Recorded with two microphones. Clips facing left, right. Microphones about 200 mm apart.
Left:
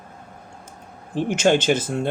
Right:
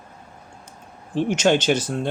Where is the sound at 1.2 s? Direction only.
50° left (ahead or behind).